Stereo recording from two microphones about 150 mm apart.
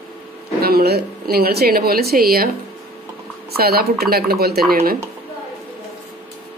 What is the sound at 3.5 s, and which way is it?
Speech, 90° right.